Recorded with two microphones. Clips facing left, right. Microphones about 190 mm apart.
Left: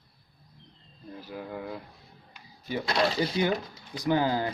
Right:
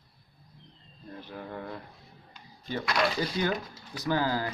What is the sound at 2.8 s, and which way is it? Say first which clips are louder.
Speech: left 2 dB; 30° left (ahead or behind).